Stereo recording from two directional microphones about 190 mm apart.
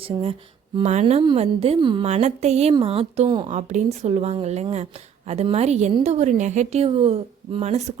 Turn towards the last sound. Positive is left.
turn(degrees=-35)  # may be behind; listen again after turning